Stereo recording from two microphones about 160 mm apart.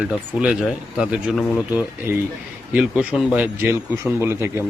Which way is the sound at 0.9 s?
5° right (ahead or behind).